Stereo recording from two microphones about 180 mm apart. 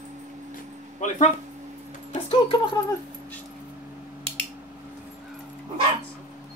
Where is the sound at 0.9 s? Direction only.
40° left (ahead or behind).